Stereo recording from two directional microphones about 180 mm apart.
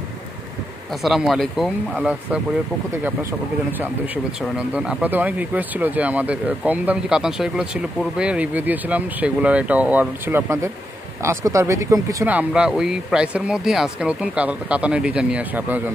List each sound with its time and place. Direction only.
1.0 s speech: centre (ahead or behind)
4.6 s speech: 5° right (ahead or behind)